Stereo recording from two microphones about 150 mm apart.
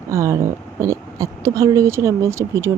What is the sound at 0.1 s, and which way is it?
A woman's voice, 20° right (ahead or behind).